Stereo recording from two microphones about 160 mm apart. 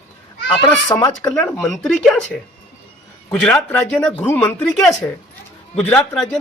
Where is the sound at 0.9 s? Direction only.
20° left (ahead or behind).